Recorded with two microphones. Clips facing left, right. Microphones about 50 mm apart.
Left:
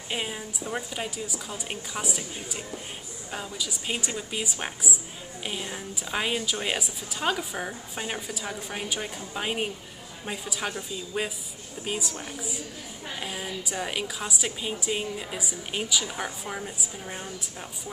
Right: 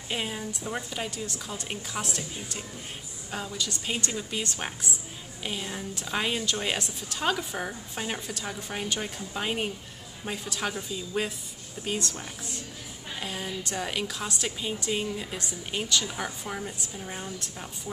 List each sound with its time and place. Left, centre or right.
0.1 s a woman's voice: centre